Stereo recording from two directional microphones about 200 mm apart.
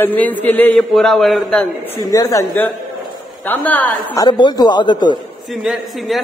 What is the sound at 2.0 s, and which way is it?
Speech, 15° left (ahead or behind).